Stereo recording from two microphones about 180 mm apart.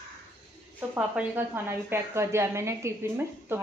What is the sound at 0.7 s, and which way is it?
Speech, 10° right (ahead or behind).